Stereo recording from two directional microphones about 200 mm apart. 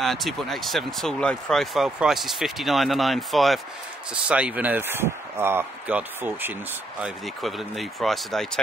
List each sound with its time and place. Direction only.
0.0 s speech: centre (ahead or behind)